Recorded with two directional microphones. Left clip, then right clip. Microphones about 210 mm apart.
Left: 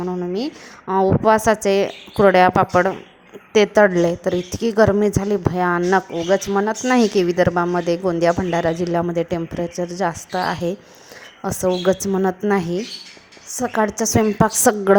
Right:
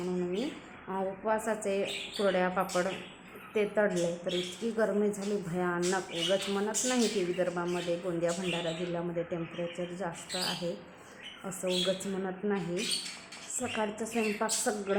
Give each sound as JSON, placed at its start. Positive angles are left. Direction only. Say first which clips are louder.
{"t": 0.0, "sound": "a woman's voice", "louder": "left 10 dB", "side_deg": 40}